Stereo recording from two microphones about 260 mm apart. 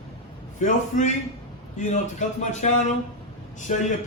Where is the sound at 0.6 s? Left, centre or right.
Left.